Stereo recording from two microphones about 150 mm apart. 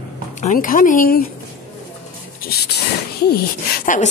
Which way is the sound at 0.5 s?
65° left (ahead or behind).